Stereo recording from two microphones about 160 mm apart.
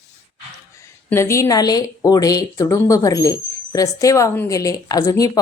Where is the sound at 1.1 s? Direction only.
15° left (ahead or behind).